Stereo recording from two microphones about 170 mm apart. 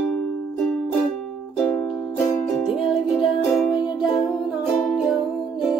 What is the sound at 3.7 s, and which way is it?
Music, 25° left (ahead or behind).